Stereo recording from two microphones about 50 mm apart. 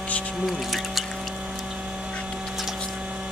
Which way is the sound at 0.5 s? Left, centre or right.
Centre.